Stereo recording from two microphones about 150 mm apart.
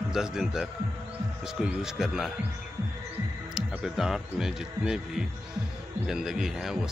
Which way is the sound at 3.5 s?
5° right (ahead or behind).